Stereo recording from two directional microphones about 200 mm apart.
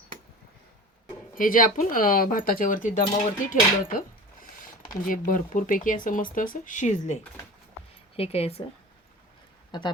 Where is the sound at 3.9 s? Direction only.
45° left (ahead or behind).